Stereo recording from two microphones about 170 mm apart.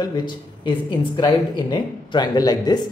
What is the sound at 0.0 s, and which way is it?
Speech, 25° left (ahead or behind).